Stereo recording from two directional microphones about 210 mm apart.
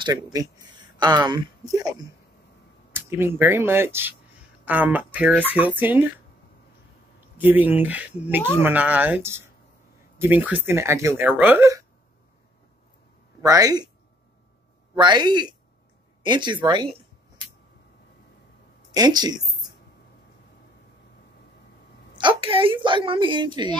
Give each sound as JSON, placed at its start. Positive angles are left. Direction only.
{"t": 0.0, "sound": "speech", "side_deg": -15}
{"t": 7.3, "sound": "speech", "side_deg": -10}
{"t": 13.4, "sound": "speech", "side_deg": -15}
{"t": 15.0, "sound": "a woman's voice", "side_deg": -20}
{"t": 18.9, "sound": "a woman's voice", "side_deg": -20}
{"t": 22.1, "sound": "a woman's voice", "side_deg": -25}